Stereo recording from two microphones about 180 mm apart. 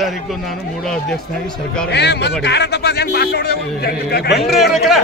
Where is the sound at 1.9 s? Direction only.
65° left (ahead or behind).